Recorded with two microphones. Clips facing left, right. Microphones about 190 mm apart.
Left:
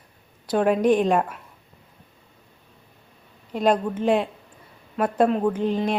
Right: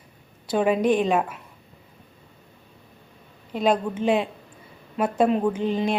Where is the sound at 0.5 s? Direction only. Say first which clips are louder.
Left 1 dB; 5° right (ahead or behind).